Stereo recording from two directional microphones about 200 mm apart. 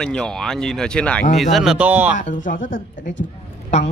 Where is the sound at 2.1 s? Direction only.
40° left (ahead or behind).